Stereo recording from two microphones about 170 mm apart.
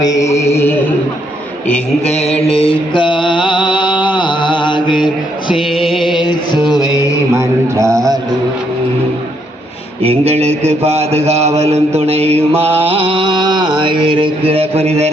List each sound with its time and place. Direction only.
0.0 s mantra: 20° left (ahead or behind)
0.5 s a sound: 15° left (ahead or behind)
2.0 s mantra: 40° left (ahead or behind)
4.0 s music: 25° left (ahead or behind)
5.5 s music: centre (ahead or behind)
6.2 s music: 25° left (ahead or behind)
7.3 s a sound: 20° right (ahead or behind)
10.0 s a sound: 35° right (ahead or behind)
10.6 s mantra: 35° right (ahead or behind)